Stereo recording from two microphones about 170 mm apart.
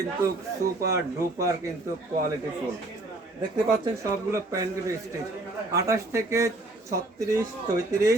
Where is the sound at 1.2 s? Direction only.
20° right (ahead or behind).